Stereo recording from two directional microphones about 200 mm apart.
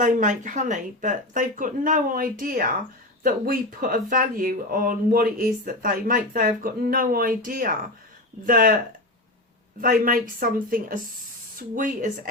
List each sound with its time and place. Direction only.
0.0 s speech: 40° right (ahead or behind)
9.8 s speech: 45° right (ahead or behind)